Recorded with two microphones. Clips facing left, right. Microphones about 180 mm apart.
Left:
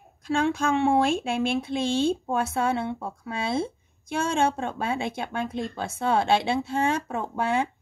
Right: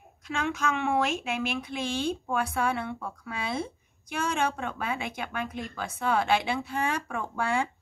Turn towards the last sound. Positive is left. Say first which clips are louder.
# left 3 dB
turn(degrees=20)  # may be behind; listen again after turning